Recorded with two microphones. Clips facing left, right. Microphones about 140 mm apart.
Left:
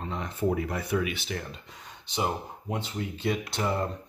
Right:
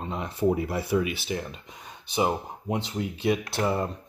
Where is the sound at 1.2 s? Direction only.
5° right (ahead or behind).